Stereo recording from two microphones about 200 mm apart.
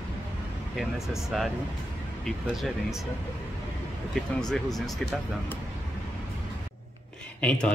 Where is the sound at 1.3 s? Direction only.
Centre (ahead or behind).